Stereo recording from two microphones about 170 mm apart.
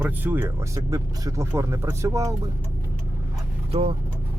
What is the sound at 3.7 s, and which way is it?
Speech, 35° right (ahead or behind).